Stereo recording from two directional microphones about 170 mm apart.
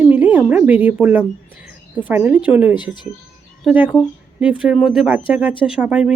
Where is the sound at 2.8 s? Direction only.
25° left (ahead or behind).